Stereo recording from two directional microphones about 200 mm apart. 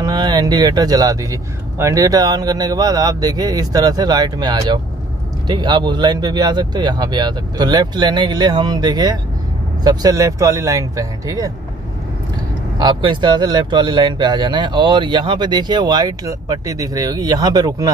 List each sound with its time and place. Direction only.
0.0 s speech: 20° right (ahead or behind)
12.7 s speech: 20° right (ahead or behind)